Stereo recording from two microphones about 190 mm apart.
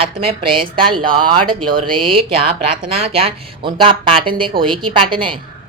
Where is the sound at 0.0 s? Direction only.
30° right (ahead or behind).